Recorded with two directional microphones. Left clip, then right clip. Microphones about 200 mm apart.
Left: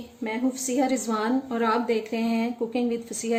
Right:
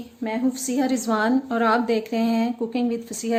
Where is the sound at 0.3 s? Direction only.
45° right (ahead or behind).